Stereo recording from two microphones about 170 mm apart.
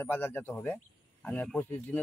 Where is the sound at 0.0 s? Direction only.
10° left (ahead or behind).